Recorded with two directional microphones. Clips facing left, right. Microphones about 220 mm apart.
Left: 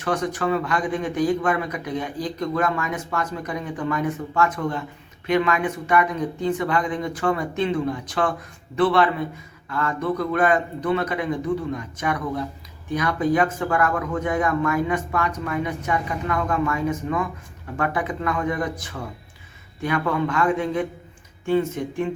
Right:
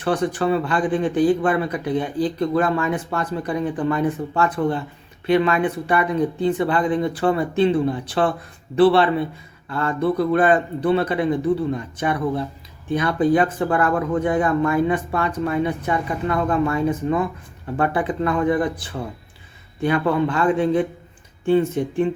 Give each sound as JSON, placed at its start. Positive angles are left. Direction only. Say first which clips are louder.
{"t": 0.0, "sound": "speech", "louder": "right 3 dB", "side_deg": -30}